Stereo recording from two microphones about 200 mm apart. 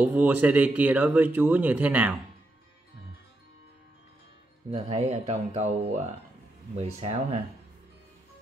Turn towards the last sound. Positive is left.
turn(degrees=-30)  # may be behind; listen again after turning